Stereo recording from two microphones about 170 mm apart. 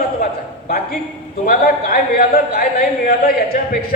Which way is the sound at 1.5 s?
55° left (ahead or behind).